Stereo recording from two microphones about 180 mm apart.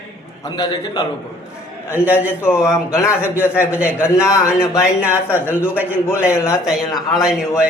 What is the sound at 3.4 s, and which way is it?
Speech, 15° left (ahead or behind).